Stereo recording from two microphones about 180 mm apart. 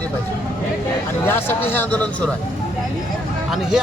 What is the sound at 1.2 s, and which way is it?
A man's voice, 10° left (ahead or behind).